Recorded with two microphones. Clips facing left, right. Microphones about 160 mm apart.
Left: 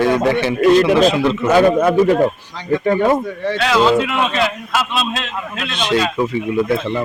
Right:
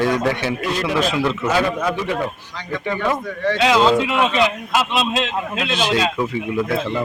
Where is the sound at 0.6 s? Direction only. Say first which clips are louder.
Left 14 dB; 55° left (ahead or behind).